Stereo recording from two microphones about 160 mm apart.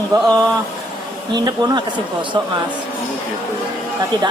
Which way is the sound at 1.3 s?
25° right (ahead or behind).